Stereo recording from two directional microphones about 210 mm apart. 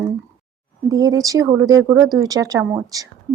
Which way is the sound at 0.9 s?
15° right (ahead or behind).